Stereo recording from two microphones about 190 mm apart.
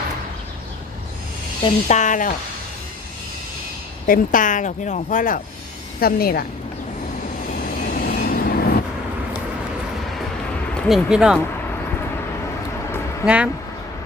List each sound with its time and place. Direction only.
1.6 s speech: 40° left (ahead or behind)
4.0 s speech: 45° left (ahead or behind)
7.7 s train: 50° left (ahead or behind)
10.8 s speech: centre (ahead or behind)
13.2 s speech: 5° right (ahead or behind)